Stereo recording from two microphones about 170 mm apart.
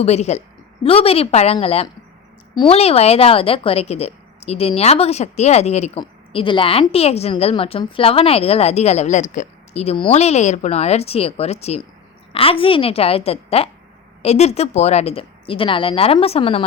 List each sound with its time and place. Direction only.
0.0 s a woman's voice: 40° left (ahead or behind)